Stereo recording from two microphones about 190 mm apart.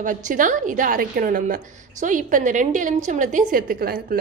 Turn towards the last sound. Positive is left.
turn(degrees=-50)  # may be behind; listen again after turning